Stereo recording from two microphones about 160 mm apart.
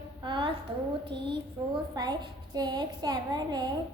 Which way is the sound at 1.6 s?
25° right (ahead or behind).